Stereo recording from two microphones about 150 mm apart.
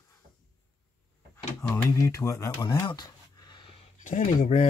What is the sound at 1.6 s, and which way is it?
Speech, 20° left (ahead or behind).